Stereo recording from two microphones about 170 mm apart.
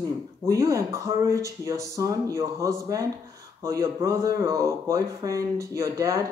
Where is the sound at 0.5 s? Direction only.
20° right (ahead or behind).